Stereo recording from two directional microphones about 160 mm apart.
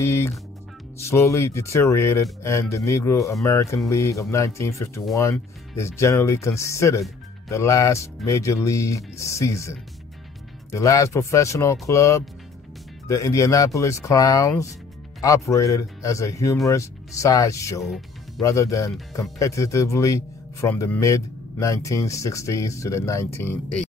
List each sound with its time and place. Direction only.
0.0 s music: 15° left (ahead or behind)
0.9 s speech: 15° left (ahead or behind)